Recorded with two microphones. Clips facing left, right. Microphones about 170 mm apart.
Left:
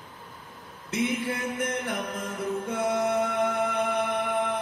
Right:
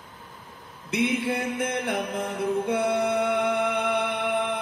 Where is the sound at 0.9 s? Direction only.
70° right (ahead or behind).